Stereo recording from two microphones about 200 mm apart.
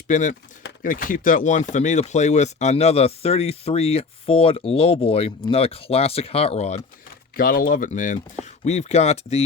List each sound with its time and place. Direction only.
0.1 s speech: 40° left (ahead or behind)
7.3 s speech: 45° left (ahead or behind)